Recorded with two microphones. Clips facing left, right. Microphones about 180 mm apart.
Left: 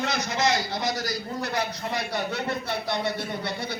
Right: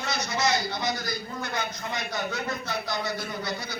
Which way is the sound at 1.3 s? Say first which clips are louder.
Left 5 dB; 35° left (ahead or behind).